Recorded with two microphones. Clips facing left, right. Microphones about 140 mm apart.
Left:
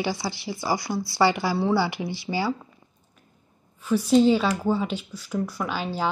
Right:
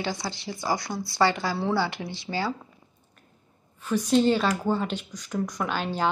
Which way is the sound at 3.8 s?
10° left (ahead or behind).